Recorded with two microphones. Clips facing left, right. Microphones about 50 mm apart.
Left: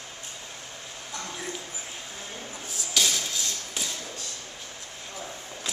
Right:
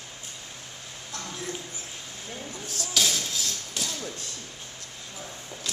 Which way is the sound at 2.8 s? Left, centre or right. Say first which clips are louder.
Even; centre.